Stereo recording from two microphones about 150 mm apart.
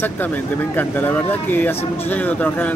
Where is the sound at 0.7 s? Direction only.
10° left (ahead or behind).